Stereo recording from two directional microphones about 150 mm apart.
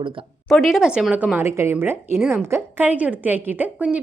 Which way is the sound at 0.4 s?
Centre (ahead or behind).